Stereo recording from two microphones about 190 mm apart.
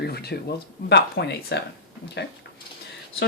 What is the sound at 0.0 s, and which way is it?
Speech, 55° left (ahead or behind).